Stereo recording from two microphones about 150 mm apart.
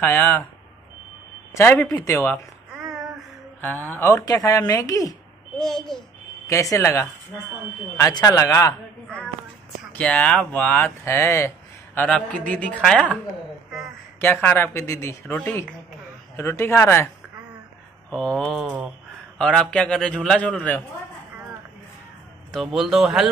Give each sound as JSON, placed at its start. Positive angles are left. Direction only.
{"t": 0.0, "sound": "speech", "side_deg": 15}
{"t": 1.5, "sound": "speech", "side_deg": 15}
{"t": 3.6, "sound": "speech", "side_deg": 10}
{"t": 5.6, "sound": "speech", "side_deg": 5}
{"t": 6.4, "sound": "speech", "side_deg": 20}
{"t": 9.9, "sound": "speech", "side_deg": 10}
{"t": 14.2, "sound": "speech", "side_deg": 10}
{"t": 18.1, "sound": "speech", "side_deg": 5}
{"t": 22.5, "sound": "speech", "side_deg": 0}